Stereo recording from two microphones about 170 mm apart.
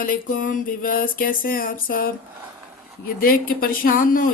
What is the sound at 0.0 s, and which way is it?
Speech, 55° left (ahead or behind).